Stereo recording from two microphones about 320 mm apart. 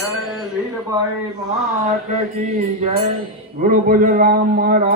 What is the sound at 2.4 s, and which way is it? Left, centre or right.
A man's voice, right.